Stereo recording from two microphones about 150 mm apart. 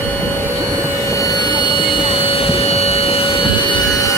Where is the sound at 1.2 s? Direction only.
25° left (ahead or behind).